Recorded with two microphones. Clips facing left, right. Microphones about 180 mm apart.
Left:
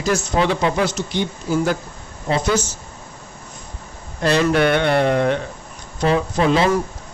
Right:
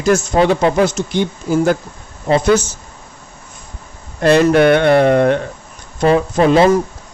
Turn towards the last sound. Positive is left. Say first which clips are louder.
# right 6 dB
turn(degrees=-50)  # may be behind; listen again after turning